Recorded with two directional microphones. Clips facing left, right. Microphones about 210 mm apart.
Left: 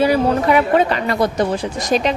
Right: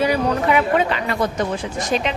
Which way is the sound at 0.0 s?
30° left (ahead or behind).